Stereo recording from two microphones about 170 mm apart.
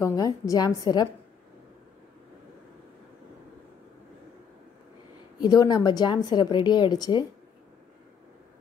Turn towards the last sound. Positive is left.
turn(degrees=25)  # may be behind; listen again after turning